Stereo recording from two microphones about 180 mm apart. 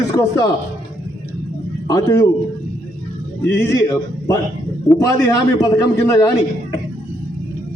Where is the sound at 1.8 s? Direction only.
20° left (ahead or behind).